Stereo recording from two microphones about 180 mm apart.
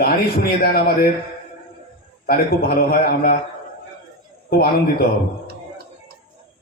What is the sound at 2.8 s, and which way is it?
Mantra, 55° left (ahead or behind).